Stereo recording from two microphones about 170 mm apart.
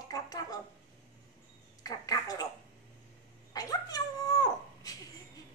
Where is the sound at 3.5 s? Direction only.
20° left (ahead or behind).